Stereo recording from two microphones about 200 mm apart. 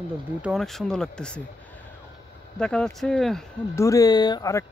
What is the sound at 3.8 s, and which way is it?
Speech, 15° left (ahead or behind).